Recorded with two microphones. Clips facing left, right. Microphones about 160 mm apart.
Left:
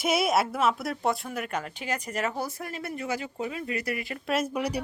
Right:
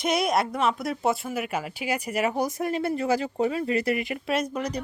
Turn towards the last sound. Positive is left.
turn(degrees=10)  # may be behind; listen again after turning